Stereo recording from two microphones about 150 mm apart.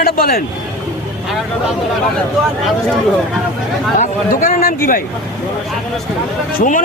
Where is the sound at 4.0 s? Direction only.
60° left (ahead or behind).